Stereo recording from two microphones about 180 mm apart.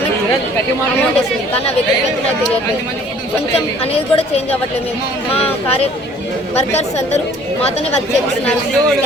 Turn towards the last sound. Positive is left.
turn(degrees=35)  # may be behind; listen again after turning